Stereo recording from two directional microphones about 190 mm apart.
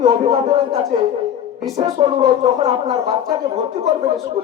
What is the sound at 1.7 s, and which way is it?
Music, 35° right (ahead or behind).